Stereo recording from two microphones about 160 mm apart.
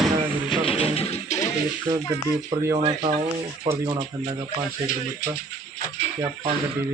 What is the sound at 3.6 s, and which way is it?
Speech, 15° right (ahead or behind).